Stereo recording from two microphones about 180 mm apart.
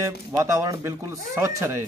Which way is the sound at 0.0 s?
15° right (ahead or behind).